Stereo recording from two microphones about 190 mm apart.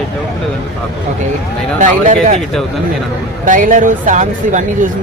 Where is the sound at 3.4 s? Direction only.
45° right (ahead or behind).